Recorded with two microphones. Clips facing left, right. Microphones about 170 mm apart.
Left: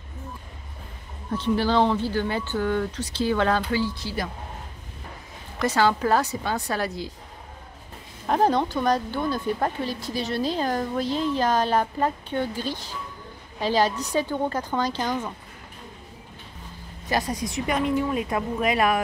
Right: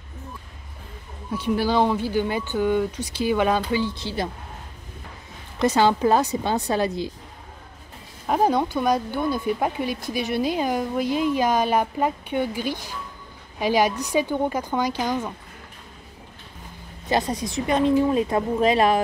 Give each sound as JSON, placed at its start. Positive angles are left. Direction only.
{"t": 1.3, "sound": "speech", "side_deg": -10}
{"t": 5.6, "sound": "speech", "side_deg": -20}
{"t": 8.3, "sound": "speech", "side_deg": -10}
{"t": 17.1, "sound": "speech", "side_deg": -25}